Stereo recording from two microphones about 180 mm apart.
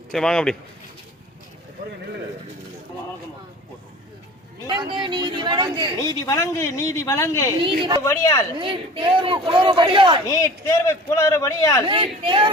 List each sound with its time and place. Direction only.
0.1 s speech: 5° left (ahead or behind)
4.6 s speech: 25° right (ahead or behind)
6.0 s a man's voice: 20° left (ahead or behind)
7.6 s speech: 25° right (ahead or behind)
8.0 s a man's voice: 15° left (ahead or behind)
8.5 s speech: 30° right (ahead or behind)
10.2 s a man's voice: 15° left (ahead or behind)
11.9 s speech: 30° right (ahead or behind)